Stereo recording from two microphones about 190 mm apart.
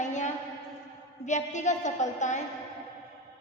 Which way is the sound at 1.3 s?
40° left (ahead or behind).